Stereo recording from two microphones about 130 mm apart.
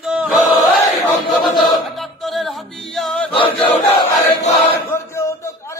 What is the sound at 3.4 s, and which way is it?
Battle cry, 40° left (ahead or behind).